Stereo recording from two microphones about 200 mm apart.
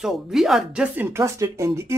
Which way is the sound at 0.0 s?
Centre (ahead or behind).